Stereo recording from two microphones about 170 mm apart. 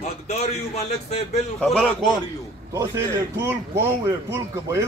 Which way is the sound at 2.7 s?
20° right (ahead or behind).